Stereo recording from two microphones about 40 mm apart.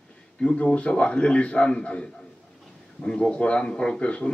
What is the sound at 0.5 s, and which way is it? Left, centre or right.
A man's voice, left.